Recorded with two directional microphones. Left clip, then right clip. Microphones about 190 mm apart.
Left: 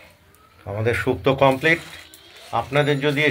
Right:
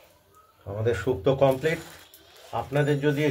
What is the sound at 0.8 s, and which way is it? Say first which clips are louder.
A man's voice: left 4 dB; 15° left (ahead or behind).